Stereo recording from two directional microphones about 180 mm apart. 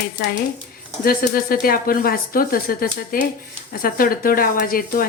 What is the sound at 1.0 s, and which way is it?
Speech, 55° left (ahead or behind).